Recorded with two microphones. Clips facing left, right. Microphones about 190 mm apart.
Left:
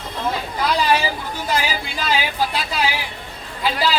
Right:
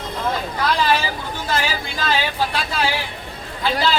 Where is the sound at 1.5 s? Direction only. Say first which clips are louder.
Left 1 dB; 10° left (ahead or behind).